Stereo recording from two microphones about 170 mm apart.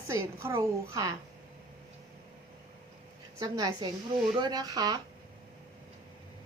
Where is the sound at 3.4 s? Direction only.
20° right (ahead or behind).